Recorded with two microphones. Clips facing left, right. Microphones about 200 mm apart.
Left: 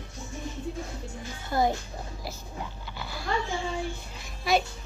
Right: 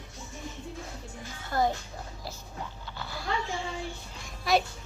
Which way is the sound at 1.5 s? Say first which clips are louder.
Left 2 dB; 15° left (ahead or behind).